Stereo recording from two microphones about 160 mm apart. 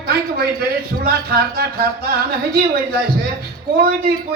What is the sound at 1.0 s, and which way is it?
A man's voice, 75° right (ahead or behind).